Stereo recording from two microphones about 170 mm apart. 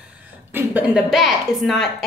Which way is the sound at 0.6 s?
10° right (ahead or behind).